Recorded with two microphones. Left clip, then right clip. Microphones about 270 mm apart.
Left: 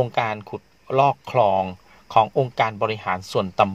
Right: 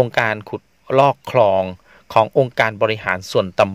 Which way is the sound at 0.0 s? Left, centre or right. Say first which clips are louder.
Right 5 dB; right.